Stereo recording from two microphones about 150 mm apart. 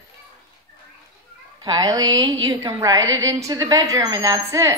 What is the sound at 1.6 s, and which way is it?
A woman's voice, 25° right (ahead or behind).